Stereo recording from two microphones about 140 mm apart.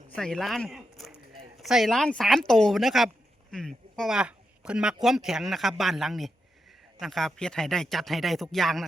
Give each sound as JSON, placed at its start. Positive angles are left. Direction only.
{"t": 0.2, "sound": "speech", "side_deg": 5}